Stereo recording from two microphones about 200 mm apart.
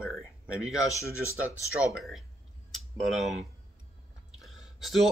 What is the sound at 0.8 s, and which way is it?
Speech, 15° left (ahead or behind).